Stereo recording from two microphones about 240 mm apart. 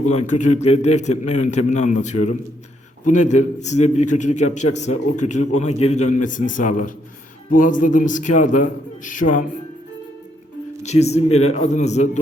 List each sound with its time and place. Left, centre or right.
0.1 s a man's voice: left
10.8 s a man's voice: left